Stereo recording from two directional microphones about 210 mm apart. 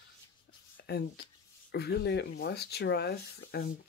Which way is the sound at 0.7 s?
50° left (ahead or behind).